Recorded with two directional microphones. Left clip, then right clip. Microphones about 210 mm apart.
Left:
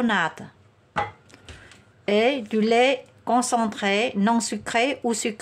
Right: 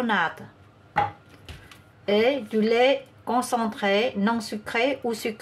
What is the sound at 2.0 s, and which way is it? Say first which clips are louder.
Speech: left 1 dB; 30° left (ahead or behind).